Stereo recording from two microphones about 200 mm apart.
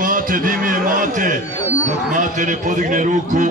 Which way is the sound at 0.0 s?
45° right (ahead or behind).